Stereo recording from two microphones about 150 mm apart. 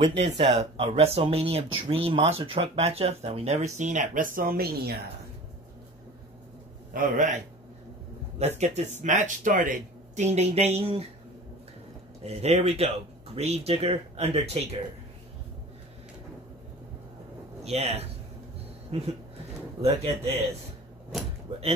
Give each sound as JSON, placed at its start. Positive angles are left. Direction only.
{"t": 0.0, "sound": "speech", "side_deg": -35}
{"t": 6.9, "sound": "a man's voice", "side_deg": -60}
{"t": 8.5, "sound": "speech", "side_deg": -50}
{"t": 12.2, "sound": "speech", "side_deg": -45}
{"t": 17.6, "sound": "speech", "side_deg": -45}
{"t": 19.8, "sound": "speech", "side_deg": -40}